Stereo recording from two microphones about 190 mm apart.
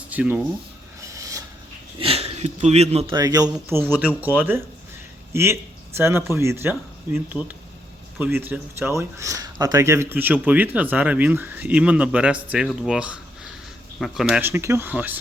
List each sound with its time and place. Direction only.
0.1 s speech: 5° right (ahead or behind)
1.0 s a sound: 15° right (ahead or behind)
2.0 s speech: 30° right (ahead or behind)
3.2 s speech: 20° right (ahead or behind)